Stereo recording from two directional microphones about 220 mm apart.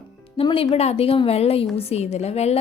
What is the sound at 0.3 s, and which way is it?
A woman's voice, 25° left (ahead or behind).